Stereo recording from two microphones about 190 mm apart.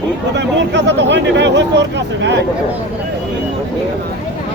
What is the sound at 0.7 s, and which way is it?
Speech, 65° right (ahead or behind).